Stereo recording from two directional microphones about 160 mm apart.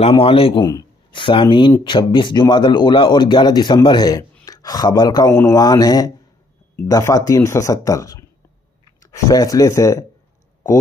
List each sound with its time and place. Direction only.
0.2 s a man's voice: 35° left (ahead or behind)
5.3 s speech: 15° left (ahead or behind)
5.6 s speech: 25° left (ahead or behind)